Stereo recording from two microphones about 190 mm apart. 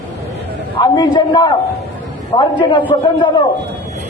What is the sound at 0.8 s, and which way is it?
A man's voice, 20° left (ahead or behind).